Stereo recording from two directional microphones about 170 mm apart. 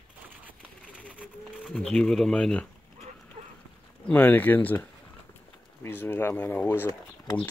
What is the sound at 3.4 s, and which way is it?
Horse, 45° right (ahead or behind).